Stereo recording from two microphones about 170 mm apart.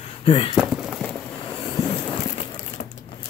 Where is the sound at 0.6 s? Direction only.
5° right (ahead or behind).